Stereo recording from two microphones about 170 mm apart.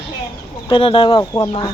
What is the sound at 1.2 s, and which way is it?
Speech, 20° left (ahead or behind).